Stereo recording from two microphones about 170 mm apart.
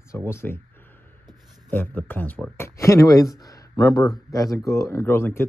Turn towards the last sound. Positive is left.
turn(degrees=15)  # may be behind; listen again after turning